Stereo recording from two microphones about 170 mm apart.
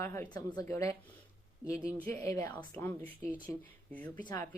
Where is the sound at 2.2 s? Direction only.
15° left (ahead or behind).